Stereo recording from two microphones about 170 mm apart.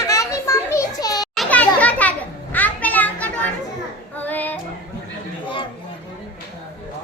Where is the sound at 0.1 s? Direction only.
20° left (ahead or behind).